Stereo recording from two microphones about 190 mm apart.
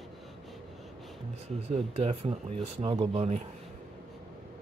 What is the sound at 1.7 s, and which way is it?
Speech, 35° right (ahead or behind).